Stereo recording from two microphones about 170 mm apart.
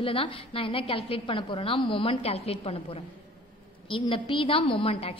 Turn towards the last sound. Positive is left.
turn(degrees=35)  # may be behind; listen again after turning